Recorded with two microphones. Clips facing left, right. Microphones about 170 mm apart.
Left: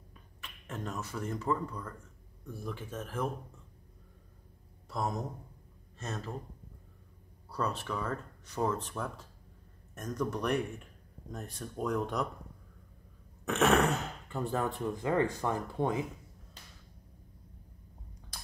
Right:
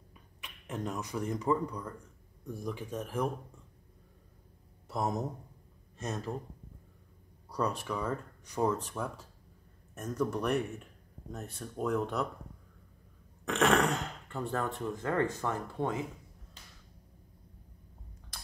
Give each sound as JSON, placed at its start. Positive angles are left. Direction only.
{"t": 0.1, "sound": "speech", "side_deg": -15}
{"t": 4.8, "sound": "a sound", "side_deg": -20}
{"t": 5.9, "sound": "speech", "side_deg": -15}
{"t": 7.4, "sound": "speech", "side_deg": -15}
{"t": 13.5, "sound": "speech", "side_deg": 5}